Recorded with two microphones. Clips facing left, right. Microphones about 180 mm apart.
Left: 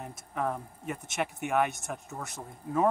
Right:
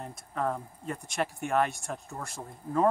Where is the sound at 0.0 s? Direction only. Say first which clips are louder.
Right 1 dB; 10° left (ahead or behind).